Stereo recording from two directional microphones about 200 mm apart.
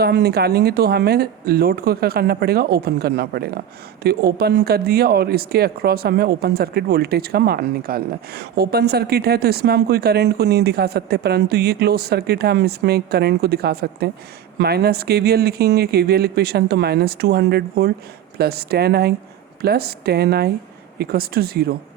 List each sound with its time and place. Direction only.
0.0 s speech: 55° right (ahead or behind)